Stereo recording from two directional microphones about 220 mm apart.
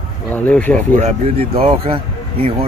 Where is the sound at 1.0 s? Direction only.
30° right (ahead or behind).